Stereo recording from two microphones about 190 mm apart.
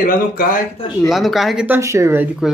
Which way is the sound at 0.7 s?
25° left (ahead or behind).